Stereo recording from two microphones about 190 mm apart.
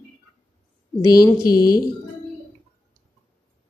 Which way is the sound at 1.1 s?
20° left (ahead or behind).